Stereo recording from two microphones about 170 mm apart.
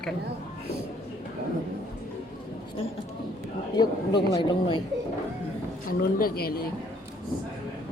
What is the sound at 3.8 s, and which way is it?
Speech, 25° left (ahead or behind).